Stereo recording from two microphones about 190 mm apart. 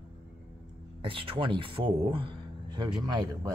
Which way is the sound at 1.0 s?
30° right (ahead or behind).